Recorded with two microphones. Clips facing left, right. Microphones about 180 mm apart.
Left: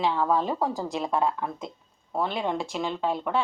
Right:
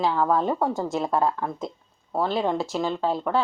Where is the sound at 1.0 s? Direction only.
30° right (ahead or behind).